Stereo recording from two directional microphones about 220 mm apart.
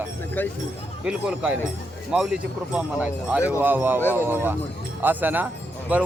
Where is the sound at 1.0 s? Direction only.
5° right (ahead or behind).